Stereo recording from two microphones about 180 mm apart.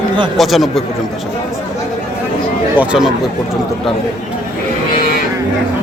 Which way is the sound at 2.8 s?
5° right (ahead or behind).